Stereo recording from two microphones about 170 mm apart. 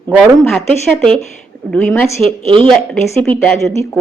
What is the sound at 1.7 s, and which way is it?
Speech, 5° left (ahead or behind).